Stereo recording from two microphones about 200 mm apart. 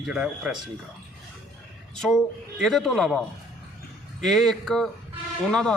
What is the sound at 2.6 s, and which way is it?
Speech, centre (ahead or behind).